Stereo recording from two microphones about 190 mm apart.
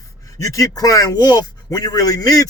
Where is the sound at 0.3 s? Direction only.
15° left (ahead or behind).